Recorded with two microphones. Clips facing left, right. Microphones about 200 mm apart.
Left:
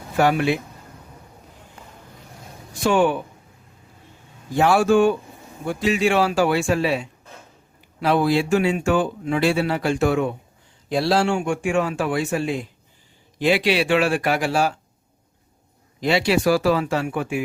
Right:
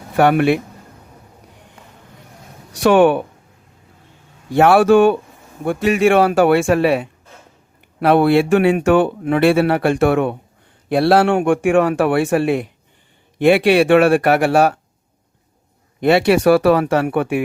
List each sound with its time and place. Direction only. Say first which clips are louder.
0.2 s speech: right 5 dB; 60° right (ahead or behind)
2.9 s speech: right 7 dB; 65° right (ahead or behind)
4.4 s speech: right 6 dB; 60° right (ahead or behind)
16.0 s speech: right 6 dB; 60° right (ahead or behind)